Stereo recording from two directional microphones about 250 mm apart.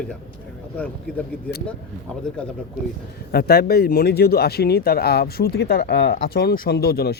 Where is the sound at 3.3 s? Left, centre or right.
Left.